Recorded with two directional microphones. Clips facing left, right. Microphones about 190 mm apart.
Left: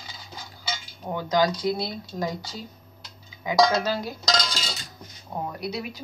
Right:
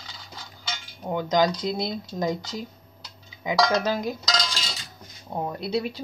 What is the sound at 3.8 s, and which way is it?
Speech, 20° right (ahead or behind).